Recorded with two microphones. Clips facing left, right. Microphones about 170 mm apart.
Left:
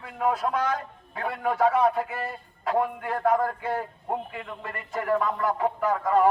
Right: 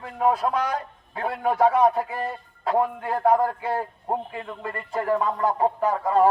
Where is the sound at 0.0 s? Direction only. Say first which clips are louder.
Right 4 dB; 30° right (ahead or behind).